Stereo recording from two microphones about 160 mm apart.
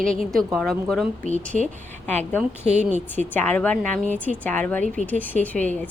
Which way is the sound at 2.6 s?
45° right (ahead or behind).